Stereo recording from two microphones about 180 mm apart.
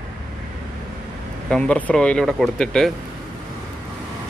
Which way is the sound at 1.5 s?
5° left (ahead or behind).